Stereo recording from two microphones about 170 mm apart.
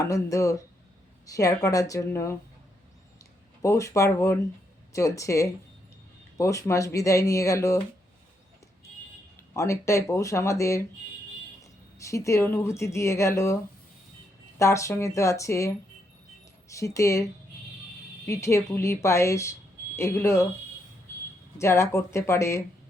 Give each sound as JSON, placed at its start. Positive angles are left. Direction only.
{"t": 0.0, "sound": "speech", "side_deg": 20}
{"t": 3.6, "sound": "speech", "side_deg": 20}
{"t": 9.6, "sound": "speech", "side_deg": 15}
{"t": 14.6, "sound": "speech", "side_deg": 15}
{"t": 18.3, "sound": "speech", "side_deg": 15}
{"t": 21.6, "sound": "speech", "side_deg": 15}